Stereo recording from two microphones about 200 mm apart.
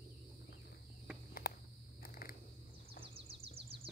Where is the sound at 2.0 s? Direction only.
45° left (ahead or behind).